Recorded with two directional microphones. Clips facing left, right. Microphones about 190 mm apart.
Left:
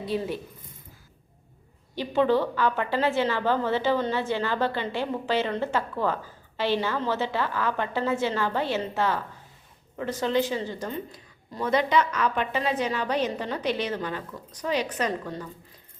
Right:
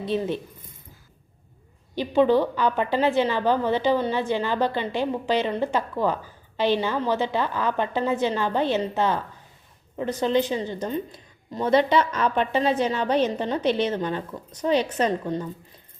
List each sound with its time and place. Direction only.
0.0 s a woman's voice: 20° right (ahead or behind)
2.0 s a woman's voice: 15° right (ahead or behind)